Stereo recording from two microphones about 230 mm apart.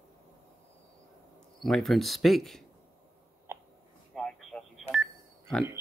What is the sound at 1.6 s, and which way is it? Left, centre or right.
Speech, centre.